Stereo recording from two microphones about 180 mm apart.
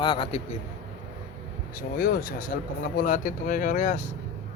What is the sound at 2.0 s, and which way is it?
Speech, 55° left (ahead or behind).